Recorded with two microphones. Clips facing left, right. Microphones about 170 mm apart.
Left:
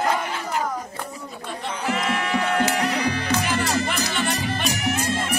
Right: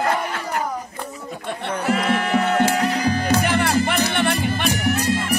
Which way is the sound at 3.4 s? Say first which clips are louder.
Right 4 dB; 60° right (ahead or behind).